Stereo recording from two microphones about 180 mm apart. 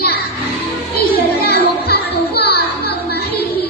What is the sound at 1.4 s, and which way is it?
Music, 60° left (ahead or behind).